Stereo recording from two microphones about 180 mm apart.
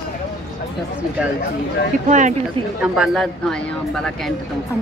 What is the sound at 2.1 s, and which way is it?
Speech, 40° right (ahead or behind).